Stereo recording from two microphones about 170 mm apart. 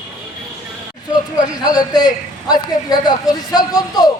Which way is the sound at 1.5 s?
20° left (ahead or behind).